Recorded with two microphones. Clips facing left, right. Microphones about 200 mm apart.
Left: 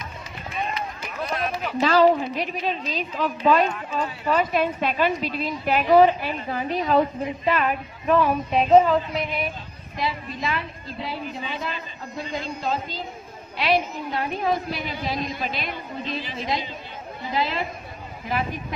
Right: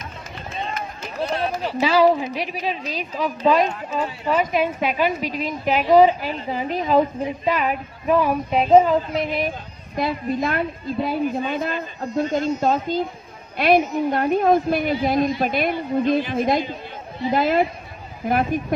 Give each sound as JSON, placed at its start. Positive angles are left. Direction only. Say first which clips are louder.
{"t": 1.0, "sound": "run", "louder": "right 5 dB", "side_deg": -30}
{"t": 1.8, "sound": "a woman's voice", "louder": "right 1 dB", "side_deg": -10}
{"t": 9.9, "sound": "a woman's voice", "louder": "right 7 dB", "side_deg": -50}